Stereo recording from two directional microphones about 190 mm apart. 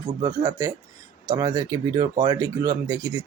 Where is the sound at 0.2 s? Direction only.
20° right (ahead or behind).